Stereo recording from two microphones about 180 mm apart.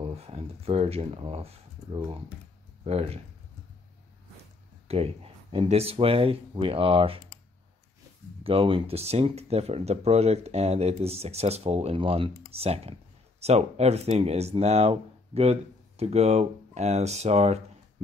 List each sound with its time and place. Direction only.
0.0 s speech: 35° right (ahead or behind)
4.8 s speech: 35° right (ahead or behind)
8.5 s speech: 30° right (ahead or behind)